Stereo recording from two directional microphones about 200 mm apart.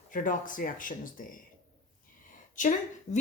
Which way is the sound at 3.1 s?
35° left (ahead or behind).